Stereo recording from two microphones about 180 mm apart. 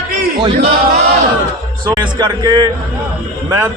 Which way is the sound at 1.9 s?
25° right (ahead or behind).